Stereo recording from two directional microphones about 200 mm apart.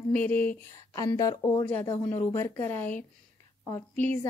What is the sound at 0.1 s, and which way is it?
A woman's voice, 10° left (ahead or behind).